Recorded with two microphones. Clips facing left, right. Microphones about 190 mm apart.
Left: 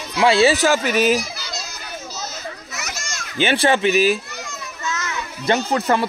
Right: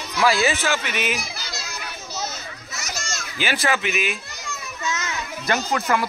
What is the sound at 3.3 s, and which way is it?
Speech, 30° left (ahead or behind).